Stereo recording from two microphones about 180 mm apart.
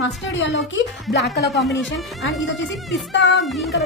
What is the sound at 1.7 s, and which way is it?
Speech, 90° left.